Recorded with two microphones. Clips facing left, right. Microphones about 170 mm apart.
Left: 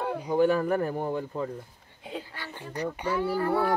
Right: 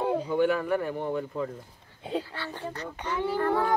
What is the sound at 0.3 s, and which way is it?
Speech, 35° left (ahead or behind).